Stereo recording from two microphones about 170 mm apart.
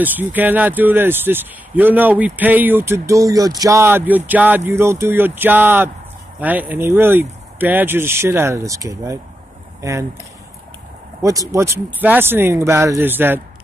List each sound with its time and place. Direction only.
0.0 s speech: 10° right (ahead or behind)
11.2 s speech: 15° right (ahead or behind)